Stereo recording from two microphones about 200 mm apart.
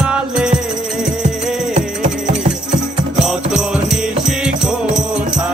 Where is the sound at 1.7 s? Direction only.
35° right (ahead or behind).